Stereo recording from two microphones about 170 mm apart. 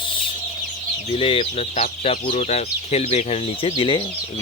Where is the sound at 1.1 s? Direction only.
35° left (ahead or behind).